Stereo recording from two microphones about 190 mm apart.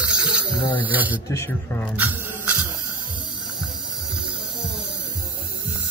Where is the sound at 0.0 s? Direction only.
5° right (ahead or behind).